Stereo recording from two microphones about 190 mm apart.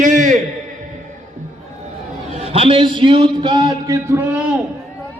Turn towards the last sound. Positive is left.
turn(degrees=-10)  # may be behind; listen again after turning